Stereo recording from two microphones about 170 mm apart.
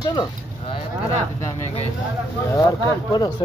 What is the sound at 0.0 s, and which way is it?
Speech, 25° left (ahead or behind).